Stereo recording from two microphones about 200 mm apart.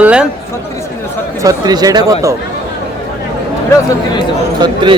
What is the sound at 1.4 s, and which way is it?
Speech, 20° right (ahead or behind).